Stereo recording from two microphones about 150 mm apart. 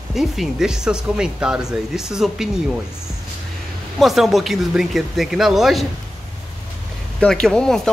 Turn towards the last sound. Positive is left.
turn(degrees=5)  # may be behind; listen again after turning